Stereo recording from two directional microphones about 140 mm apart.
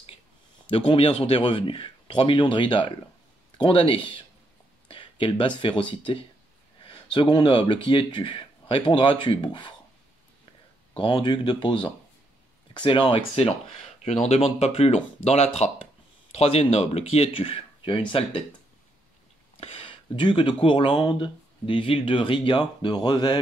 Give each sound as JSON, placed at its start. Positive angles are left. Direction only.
{"t": 0.7, "sound": "speech", "side_deg": 40}
{"t": 4.8, "sound": "a sound", "side_deg": 40}
{"t": 5.6, "sound": "speech", "side_deg": 35}
{"t": 11.0, "sound": "speech", "side_deg": 35}
{"t": 14.2, "sound": "speech", "side_deg": 50}
{"t": 19.6, "sound": "speech", "side_deg": 40}